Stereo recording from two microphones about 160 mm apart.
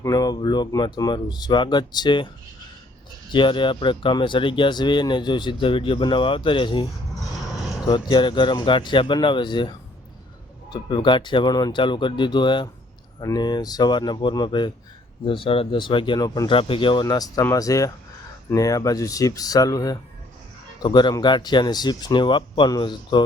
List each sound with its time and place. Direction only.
0.0 s speech: 25° left (ahead or behind)
3.3 s speech: 30° left (ahead or behind)
7.3 s mechanisms: centre (ahead or behind)
7.9 s speech: 30° left (ahead or behind)